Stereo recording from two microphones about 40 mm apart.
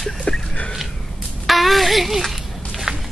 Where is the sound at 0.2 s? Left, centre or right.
Left.